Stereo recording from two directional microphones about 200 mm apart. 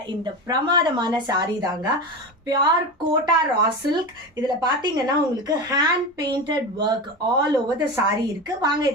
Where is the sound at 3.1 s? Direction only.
20° right (ahead or behind).